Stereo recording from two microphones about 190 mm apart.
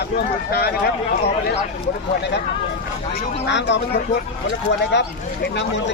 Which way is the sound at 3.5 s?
70° left (ahead or behind).